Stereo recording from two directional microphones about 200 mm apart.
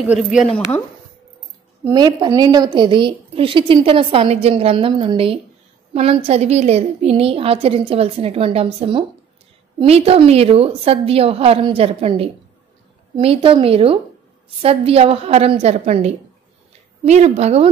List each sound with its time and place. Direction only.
0.3 s a woman's voice: centre (ahead or behind)
1.9 s a woman's voice: 20° right (ahead or behind)